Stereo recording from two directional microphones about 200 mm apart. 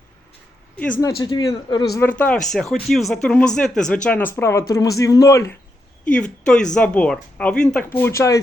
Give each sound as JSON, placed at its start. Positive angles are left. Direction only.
{"t": 1.2, "sound": "a man's voice", "side_deg": 20}
{"t": 2.0, "sound": "a man's voice", "side_deg": 10}
{"t": 6.1, "sound": "a man's voice", "side_deg": 5}